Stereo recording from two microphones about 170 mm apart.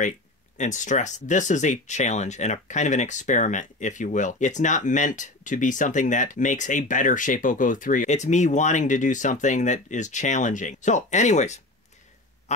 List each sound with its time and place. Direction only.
0.6 s speech: 45° left (ahead or behind)
12.5 s quack: 45° left (ahead or behind)